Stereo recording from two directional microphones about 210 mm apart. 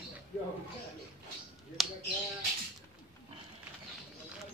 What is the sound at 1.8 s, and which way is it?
Finger snapping, centre (ahead or behind).